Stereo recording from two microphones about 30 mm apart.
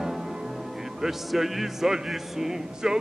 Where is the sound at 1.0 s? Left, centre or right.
Centre.